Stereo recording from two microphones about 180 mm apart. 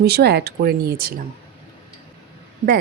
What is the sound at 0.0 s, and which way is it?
A woman's voice, 60° right (ahead or behind).